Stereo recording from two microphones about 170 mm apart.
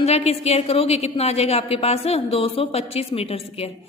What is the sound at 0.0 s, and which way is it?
A woman's voice, 40° left (ahead or behind).